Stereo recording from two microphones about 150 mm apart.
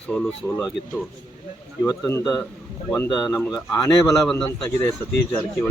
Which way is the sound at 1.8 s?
20° left (ahead or behind).